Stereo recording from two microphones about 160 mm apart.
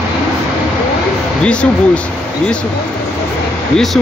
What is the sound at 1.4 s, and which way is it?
Speech, 5° left (ahead or behind).